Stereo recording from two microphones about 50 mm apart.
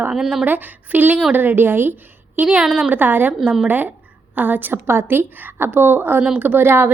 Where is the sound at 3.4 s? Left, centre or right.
Right.